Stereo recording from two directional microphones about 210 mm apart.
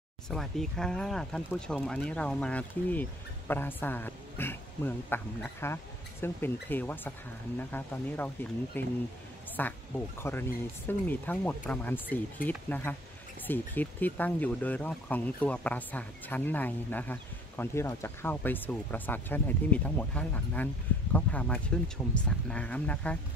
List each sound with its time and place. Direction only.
0.3 s speech: centre (ahead or behind)